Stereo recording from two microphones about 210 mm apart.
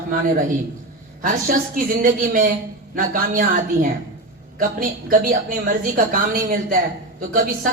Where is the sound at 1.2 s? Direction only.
45° right (ahead or behind).